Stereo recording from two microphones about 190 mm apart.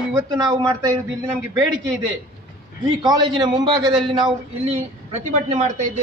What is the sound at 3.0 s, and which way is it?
Speech, 20° right (ahead or behind).